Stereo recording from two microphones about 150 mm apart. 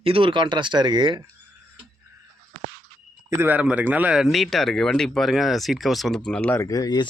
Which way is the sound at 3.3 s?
15° right (ahead or behind).